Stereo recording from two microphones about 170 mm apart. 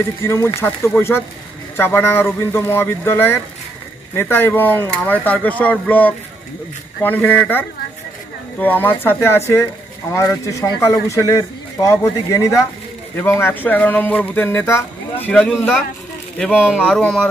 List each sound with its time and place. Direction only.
0.2 s speech: 15° left (ahead or behind)
16.4 s speech: 5° right (ahead or behind)